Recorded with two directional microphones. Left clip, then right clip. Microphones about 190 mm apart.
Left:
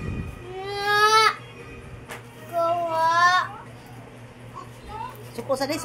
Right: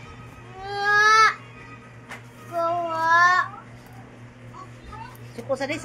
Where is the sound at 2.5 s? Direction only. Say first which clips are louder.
Left 2 dB; 20° left (ahead or behind).